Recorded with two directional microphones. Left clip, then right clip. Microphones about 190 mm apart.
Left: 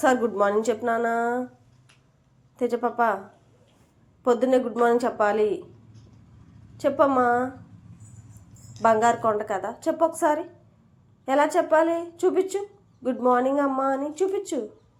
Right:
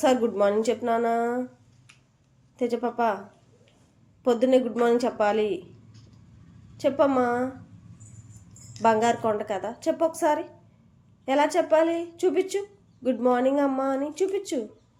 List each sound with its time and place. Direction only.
0.0 s a woman's voice: 10° right (ahead or behind)
2.6 s a woman's voice: 10° right (ahead or behind)
4.2 s a woman's voice: 15° right (ahead or behind)
6.7 s a woman's voice: 10° right (ahead or behind)
8.7 s a woman's voice: 15° right (ahead or behind)